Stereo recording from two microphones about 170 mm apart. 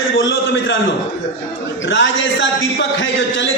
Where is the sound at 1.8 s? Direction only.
90° left.